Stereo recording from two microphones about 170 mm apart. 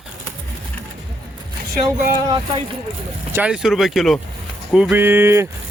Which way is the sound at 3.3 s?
5° right (ahead or behind).